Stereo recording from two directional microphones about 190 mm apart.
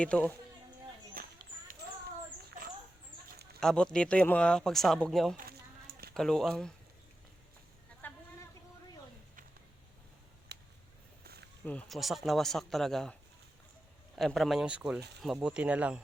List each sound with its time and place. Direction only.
0.0 s speech: 10° left (ahead or behind)
1.2 s a sound: 45° right (ahead or behind)
3.2 s chicken: 55° right (ahead or behind)
3.6 s speech: 5° left (ahead or behind)
5.4 s a sound: 55° right (ahead or behind)
6.1 s speech: centre (ahead or behind)
8.0 s chicken: 10° left (ahead or behind)
11.2 s a sound: 55° right (ahead or behind)
11.6 s speech: 5° left (ahead or behind)
14.2 s speech: centre (ahead or behind)